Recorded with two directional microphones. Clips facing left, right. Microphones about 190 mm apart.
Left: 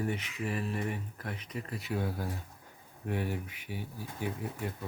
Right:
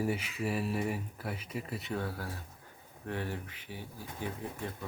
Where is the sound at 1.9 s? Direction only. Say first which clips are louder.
Left 3 dB; 15° left (ahead or behind).